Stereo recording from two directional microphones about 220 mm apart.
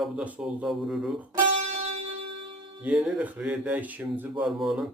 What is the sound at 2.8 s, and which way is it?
Speech, 5° right (ahead or behind).